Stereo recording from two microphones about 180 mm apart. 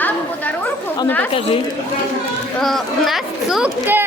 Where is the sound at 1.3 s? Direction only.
30° left (ahead or behind).